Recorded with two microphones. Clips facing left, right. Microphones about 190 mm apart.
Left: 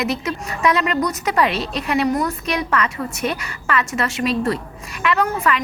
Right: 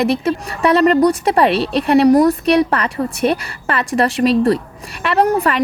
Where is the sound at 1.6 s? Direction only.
65° right (ahead or behind).